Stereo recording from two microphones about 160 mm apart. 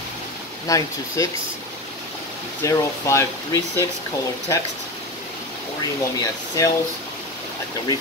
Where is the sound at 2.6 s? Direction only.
20° left (ahead or behind).